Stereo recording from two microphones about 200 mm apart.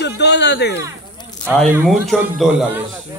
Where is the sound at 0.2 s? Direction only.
60° left (ahead or behind).